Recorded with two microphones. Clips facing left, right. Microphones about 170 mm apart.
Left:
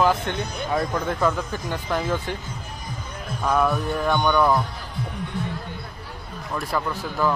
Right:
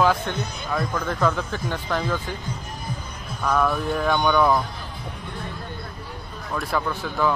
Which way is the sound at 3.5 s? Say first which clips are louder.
Even; 10° left (ahead or behind).